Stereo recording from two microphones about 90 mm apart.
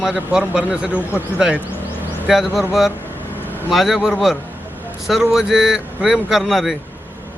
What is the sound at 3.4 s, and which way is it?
Vehicle, 20° right (ahead or behind).